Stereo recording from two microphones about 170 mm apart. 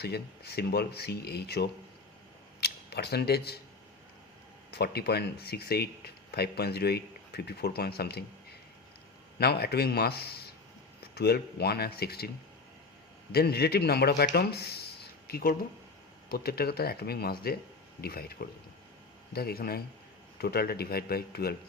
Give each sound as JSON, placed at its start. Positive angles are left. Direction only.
{"t": 0.0, "sound": "speech", "side_deg": 70}
{"t": 4.7, "sound": "speech", "side_deg": 75}
{"t": 9.4, "sound": "speech", "side_deg": 70}
{"t": 13.3, "sound": "speech", "side_deg": 70}